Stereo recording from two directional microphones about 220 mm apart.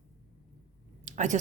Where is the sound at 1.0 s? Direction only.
35° right (ahead or behind).